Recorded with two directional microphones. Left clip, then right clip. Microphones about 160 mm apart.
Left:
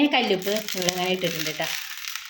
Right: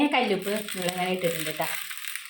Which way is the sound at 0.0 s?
15° left (ahead or behind).